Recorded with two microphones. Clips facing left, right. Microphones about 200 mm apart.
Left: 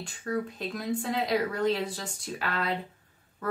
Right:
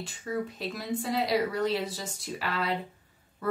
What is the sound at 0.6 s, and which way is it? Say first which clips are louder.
Speech: left 1 dB; 5° right (ahead or behind).